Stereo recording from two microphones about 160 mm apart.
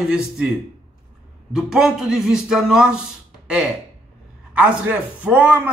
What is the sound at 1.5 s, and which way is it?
A man's voice, 5° right (ahead or behind).